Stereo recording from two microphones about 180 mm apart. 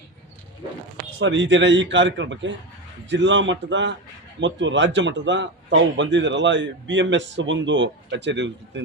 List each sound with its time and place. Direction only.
1.2 s a man's voice: 90° right